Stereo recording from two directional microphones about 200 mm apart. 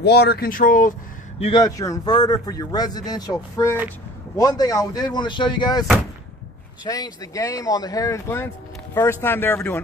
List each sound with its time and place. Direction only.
0.0 s speech: 55° left (ahead or behind)
1.4 s a man's voice: 20° left (ahead or behind)
6.9 s speech: 15° left (ahead or behind)